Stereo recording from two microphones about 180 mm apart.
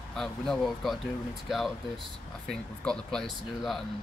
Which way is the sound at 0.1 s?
5° left (ahead or behind).